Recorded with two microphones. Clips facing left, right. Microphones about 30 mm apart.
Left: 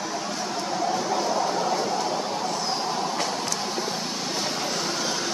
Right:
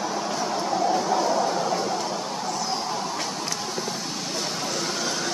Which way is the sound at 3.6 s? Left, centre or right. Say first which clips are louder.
Left 1 dB; centre.